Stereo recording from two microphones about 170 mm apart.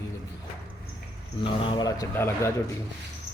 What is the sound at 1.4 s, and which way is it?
Speech, 30° left (ahead or behind).